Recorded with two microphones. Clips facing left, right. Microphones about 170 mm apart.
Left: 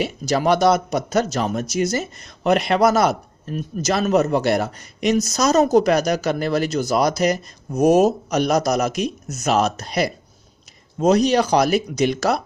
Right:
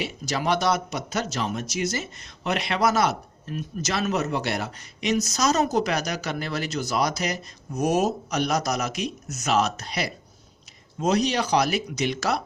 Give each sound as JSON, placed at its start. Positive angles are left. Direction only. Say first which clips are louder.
{"t": 0.0, "sound": "speech", "louder": "left 7 dB", "side_deg": 45}